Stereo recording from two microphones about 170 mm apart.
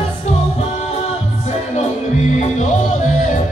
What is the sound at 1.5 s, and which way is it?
Music, 40° left (ahead or behind).